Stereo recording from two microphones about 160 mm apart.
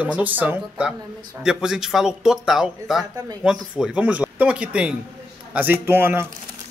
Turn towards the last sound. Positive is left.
turn(degrees=-15)  # may be behind; listen again after turning